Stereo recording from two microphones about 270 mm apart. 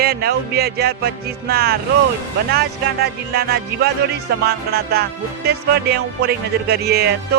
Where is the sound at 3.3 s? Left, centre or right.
Right.